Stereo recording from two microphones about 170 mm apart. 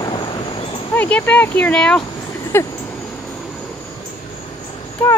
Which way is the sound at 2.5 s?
15° left (ahead or behind).